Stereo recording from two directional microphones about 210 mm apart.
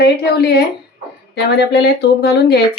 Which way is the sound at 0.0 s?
50° left (ahead or behind).